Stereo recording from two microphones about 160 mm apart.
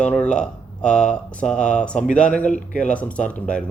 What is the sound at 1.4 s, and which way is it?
Speech, 50° left (ahead or behind).